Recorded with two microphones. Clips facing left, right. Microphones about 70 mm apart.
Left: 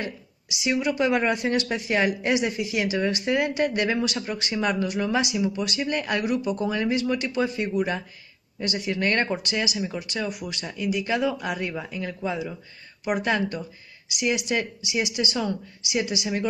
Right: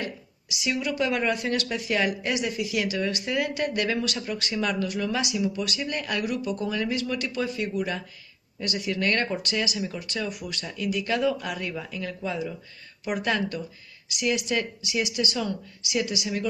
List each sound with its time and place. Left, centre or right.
0.6 s speech: left